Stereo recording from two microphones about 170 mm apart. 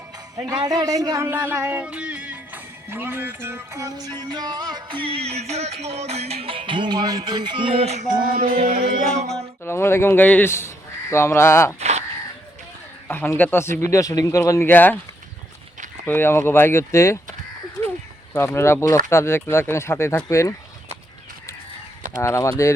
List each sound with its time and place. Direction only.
0.3 s a man's voice: 20° right (ahead or behind); by 8.5 s 55° right (ahead or behind)
8.5 s music: 35° right (ahead or behind)
8.8 s music: 50° right (ahead or behind)
9.6 s speech: 15° left (ahead or behind)
11.8 s a sound: 40° right (ahead or behind)
13.1 s speech: 10° left (ahead or behind)
16.0 s speech: 15° left (ahead or behind)
18.3 s speech: 15° left (ahead or behind)
22.2 s speech: 15° left (ahead or behind)